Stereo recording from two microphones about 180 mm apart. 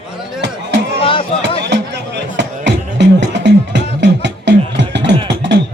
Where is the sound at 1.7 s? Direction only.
80° right.